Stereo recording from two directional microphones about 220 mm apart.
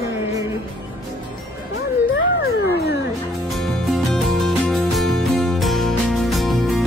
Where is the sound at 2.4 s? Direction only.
45° left (ahead or behind).